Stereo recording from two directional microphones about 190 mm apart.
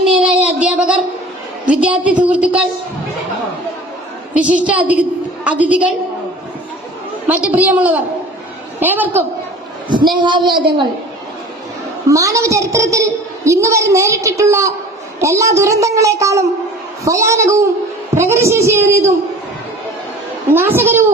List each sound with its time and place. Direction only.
0.2 s a sound: 5° right (ahead or behind)
1.7 s a woman's voice: 5° right (ahead or behind)
4.4 s a woman's voice: 5° right (ahead or behind)
7.3 s a woman's voice: 10° right (ahead or behind)
9.9 s a man's voice: 25° right (ahead or behind)
12.0 s a woman's voice: 15° right (ahead or behind)
20.5 s a woman's voice: 10° right (ahead or behind)